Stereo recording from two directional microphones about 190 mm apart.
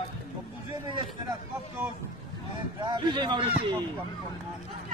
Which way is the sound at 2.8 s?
25° right (ahead or behind).